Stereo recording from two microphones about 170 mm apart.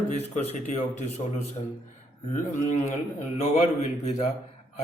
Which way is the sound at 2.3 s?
45° left (ahead or behind).